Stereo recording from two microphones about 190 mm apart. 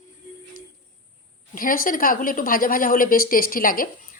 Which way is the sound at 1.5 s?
45° left (ahead or behind).